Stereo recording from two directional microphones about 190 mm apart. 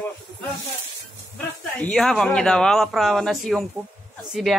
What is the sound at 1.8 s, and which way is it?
Speech, 5° left (ahead or behind).